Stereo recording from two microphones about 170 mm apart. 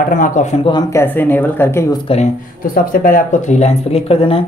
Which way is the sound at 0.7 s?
15° left (ahead or behind).